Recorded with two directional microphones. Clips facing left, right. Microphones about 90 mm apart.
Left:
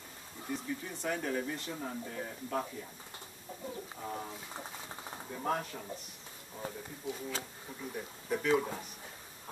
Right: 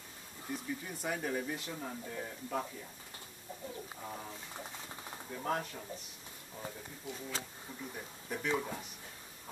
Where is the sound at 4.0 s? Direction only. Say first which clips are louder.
Left 4 dB; 10° left (ahead or behind).